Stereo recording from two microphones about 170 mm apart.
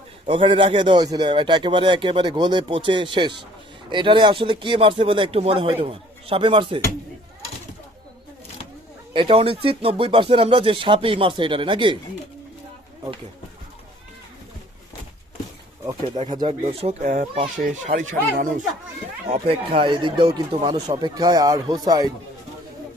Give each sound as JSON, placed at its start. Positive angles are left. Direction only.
{"t": 0.3, "sound": "a man's voice", "side_deg": -30}
{"t": 9.1, "sound": "speech", "side_deg": -35}
{"t": 16.0, "sound": "speech", "side_deg": -30}
{"t": 19.3, "sound": "a man's voice", "side_deg": -35}